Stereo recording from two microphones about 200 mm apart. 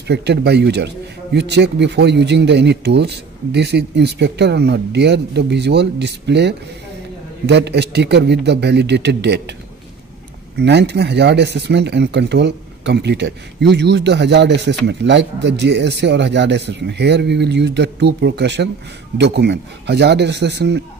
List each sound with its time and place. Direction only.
0.1 s speech: 55° right (ahead or behind)
10.6 s speech: 60° right (ahead or behind)